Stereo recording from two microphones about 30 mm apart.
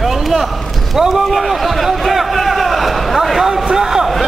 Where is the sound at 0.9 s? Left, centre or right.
Centre.